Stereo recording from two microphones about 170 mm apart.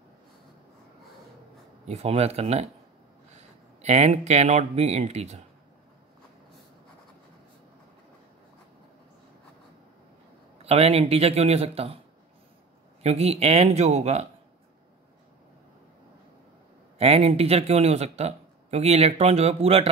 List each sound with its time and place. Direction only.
1.9 s speech: 40° right (ahead or behind)
3.8 s speech: 40° right (ahead or behind)
10.6 s speech: 35° right (ahead or behind)
13.0 s speech: 40° right (ahead or behind)
17.0 s speech: 35° right (ahead or behind)